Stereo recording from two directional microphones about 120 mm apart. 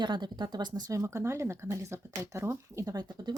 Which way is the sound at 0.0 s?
35° right (ahead or behind).